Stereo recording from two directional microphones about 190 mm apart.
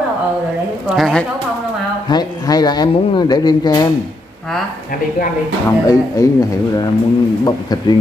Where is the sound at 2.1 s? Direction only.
20° left (ahead or behind).